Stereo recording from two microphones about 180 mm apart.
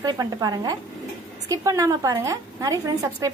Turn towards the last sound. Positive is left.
turn(degrees=-20)  # may be behind; listen again after turning